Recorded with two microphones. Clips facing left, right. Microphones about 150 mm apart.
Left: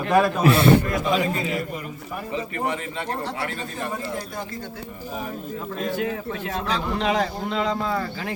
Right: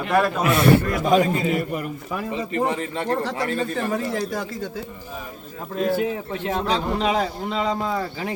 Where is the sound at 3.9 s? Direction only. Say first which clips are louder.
Right 5 dB; 90° right.